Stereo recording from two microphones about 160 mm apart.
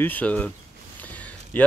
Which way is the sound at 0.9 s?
10° left (ahead or behind).